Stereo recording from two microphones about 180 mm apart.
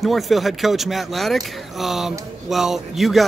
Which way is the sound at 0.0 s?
Centre (ahead or behind).